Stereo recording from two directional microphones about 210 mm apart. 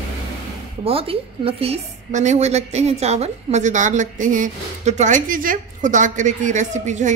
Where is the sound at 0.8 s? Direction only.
25° right (ahead or behind).